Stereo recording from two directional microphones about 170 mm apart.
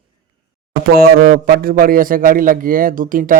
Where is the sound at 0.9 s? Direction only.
60° right (ahead or behind).